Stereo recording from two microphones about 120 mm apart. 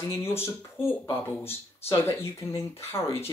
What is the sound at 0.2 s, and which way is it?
Speech, 20° left (ahead or behind).